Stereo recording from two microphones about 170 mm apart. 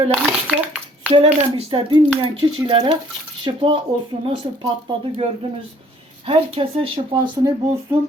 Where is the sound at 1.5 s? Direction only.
30° right (ahead or behind).